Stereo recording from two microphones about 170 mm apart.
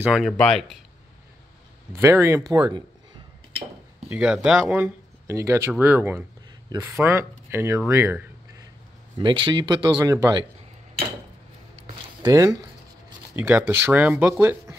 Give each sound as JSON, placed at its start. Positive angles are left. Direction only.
{"t": 0.0, "sound": "speech", "side_deg": -5}
{"t": 2.0, "sound": "speech", "side_deg": -15}
{"t": 4.1, "sound": "speech", "side_deg": -5}
{"t": 9.2, "sound": "speech", "side_deg": -30}
{"t": 11.9, "sound": "a sound", "side_deg": -25}
{"t": 13.4, "sound": "speech", "side_deg": -10}